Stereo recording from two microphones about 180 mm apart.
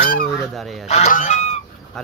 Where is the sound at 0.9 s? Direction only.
40° left (ahead or behind).